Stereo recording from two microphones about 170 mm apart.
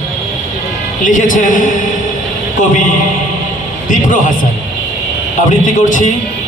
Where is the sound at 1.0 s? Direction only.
50° left (ahead or behind).